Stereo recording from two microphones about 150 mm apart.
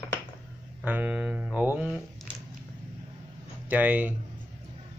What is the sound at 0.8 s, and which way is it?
Speech, 10° right (ahead or behind).